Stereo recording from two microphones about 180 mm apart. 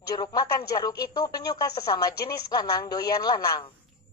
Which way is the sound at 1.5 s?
20° left (ahead or behind).